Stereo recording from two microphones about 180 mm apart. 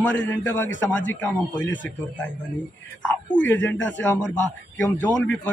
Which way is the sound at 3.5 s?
10° left (ahead or behind).